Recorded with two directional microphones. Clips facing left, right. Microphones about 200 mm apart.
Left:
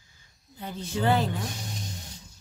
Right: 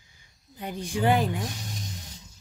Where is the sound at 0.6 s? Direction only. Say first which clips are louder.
Right 2 dB; 15° right (ahead or behind).